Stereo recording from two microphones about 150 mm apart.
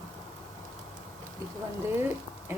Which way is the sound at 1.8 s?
15° right (ahead or behind).